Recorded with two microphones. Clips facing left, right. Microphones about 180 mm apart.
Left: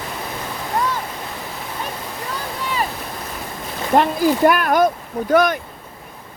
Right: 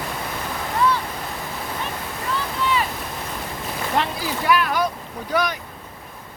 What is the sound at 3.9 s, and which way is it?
Speech, 50° left (ahead or behind).